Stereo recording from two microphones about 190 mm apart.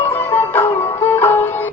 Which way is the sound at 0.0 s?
10° left (ahead or behind).